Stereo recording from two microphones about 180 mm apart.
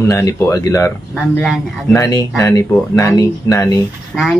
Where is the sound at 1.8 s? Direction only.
15° left (ahead or behind).